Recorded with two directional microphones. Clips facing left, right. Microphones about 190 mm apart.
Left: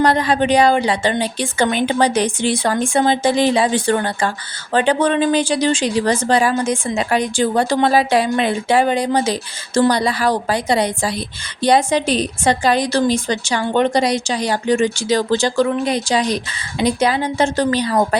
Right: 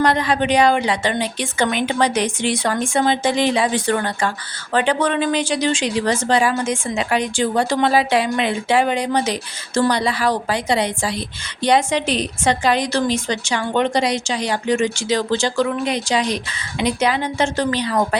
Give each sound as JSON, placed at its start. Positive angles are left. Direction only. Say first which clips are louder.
{"t": 0.0, "sound": "speech", "louder": "left 2 dB", "side_deg": 35}